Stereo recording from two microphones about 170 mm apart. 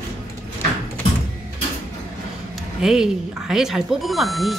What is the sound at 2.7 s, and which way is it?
Speech, 5° right (ahead or behind).